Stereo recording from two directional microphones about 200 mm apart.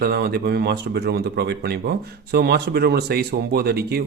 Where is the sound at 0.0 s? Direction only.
50° right (ahead or behind).